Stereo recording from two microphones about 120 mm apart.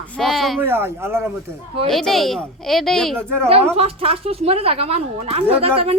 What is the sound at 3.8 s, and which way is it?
A woman's voice, 55° right (ahead or behind).